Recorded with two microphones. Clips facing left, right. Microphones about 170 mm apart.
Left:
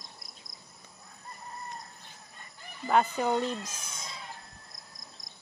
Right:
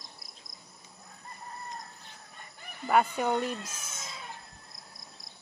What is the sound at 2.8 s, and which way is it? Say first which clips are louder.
Speech: even; 10° right (ahead or behind).